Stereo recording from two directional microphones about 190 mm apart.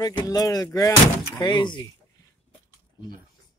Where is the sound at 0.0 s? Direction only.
20° left (ahead or behind).